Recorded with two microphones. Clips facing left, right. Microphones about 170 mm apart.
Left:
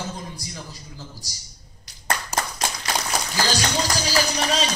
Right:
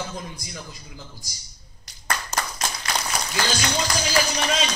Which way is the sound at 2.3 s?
10° left (ahead or behind).